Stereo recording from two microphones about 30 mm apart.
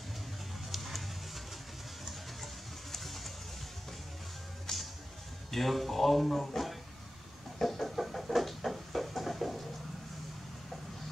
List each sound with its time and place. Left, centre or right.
0.7 s music: centre
2.0 s a sound: centre
4.7 s music: centre
5.5 s speech: centre
7.5 s chicken: centre
8.4 s heart murmur: centre